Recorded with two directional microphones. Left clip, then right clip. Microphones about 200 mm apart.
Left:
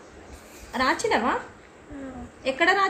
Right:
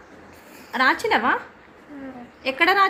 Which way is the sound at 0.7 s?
20° right (ahead or behind).